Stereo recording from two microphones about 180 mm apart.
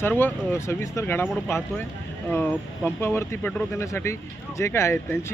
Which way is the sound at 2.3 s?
10° left (ahead or behind).